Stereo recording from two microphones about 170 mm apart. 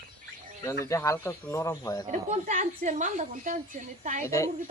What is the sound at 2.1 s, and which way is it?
A woman's voice, 45° right (ahead or behind).